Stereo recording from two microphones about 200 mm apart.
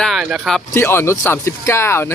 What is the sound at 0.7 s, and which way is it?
Speech, 10° left (ahead or behind).